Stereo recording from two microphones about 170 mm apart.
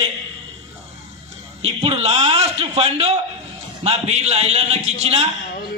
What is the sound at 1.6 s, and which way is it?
A man's voice, 35° right (ahead or behind).